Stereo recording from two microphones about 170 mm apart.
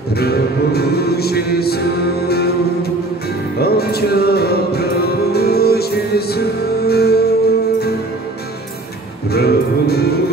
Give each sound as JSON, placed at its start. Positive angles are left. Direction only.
{"t": 0.1, "sound": "music", "side_deg": 65}
{"t": 9.3, "sound": "music", "side_deg": 65}